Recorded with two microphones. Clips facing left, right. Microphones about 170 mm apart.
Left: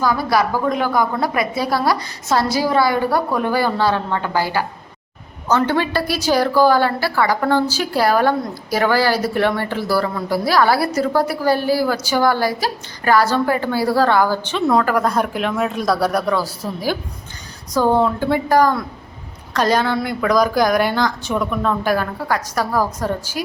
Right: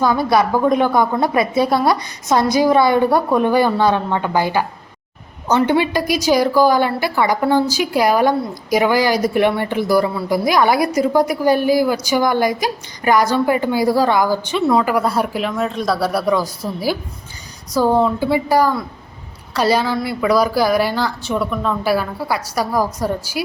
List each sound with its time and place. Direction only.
0.0 s a woman's voice: 25° right (ahead or behind); by 16.2 s centre (ahead or behind)
16.2 s speech: 15° right (ahead or behind)